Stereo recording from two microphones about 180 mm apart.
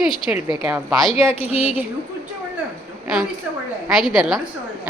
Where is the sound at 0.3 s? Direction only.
5° right (ahead or behind).